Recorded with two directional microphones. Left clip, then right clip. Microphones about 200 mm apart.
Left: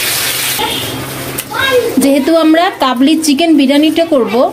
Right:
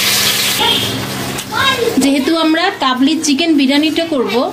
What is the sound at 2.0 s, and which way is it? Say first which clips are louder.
A woman's voice: left 5 dB; 20° left (ahead or behind).